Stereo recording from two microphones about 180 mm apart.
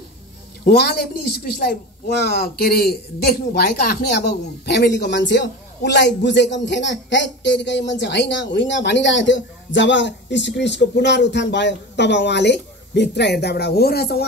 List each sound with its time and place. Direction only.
0.7 s speech: 60° left (ahead or behind)